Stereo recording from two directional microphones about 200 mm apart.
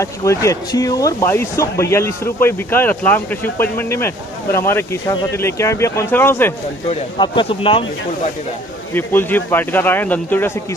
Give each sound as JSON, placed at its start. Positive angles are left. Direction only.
{"t": 0.0, "sound": "speech", "side_deg": 15}
{"t": 6.9, "sound": "speech", "side_deg": 25}
{"t": 8.9, "sound": "speech", "side_deg": 10}